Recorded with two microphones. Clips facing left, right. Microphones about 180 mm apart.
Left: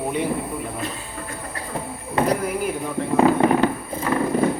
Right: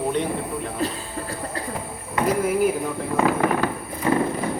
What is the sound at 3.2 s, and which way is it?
Fireworks, 25° left (ahead or behind).